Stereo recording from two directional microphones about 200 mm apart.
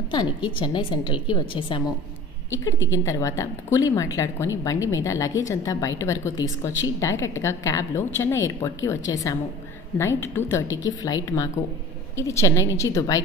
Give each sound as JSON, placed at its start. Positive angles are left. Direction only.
{"t": 0.1, "sound": "a woman's voice", "side_deg": 20}
{"t": 2.9, "sound": "a woman's voice", "side_deg": 15}